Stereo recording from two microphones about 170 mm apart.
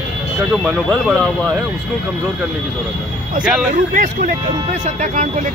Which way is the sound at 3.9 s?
50° right (ahead or behind).